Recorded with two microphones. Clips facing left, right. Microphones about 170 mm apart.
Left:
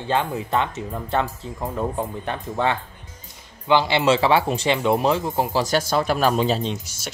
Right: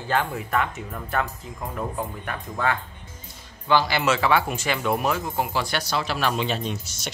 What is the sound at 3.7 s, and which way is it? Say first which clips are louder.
Speech: left 3 dB; 25° left (ahead or behind).